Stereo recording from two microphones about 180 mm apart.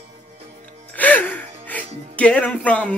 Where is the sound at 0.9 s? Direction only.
10° left (ahead or behind).